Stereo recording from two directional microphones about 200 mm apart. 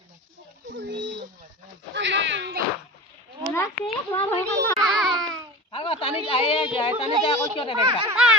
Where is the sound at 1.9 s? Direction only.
65° right (ahead or behind).